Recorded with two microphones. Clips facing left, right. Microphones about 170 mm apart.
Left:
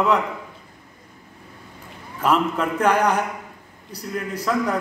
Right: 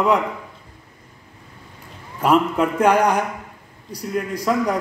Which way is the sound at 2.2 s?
10° right (ahead or behind).